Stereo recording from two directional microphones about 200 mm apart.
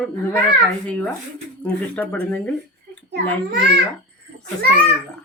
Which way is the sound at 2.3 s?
5° left (ahead or behind).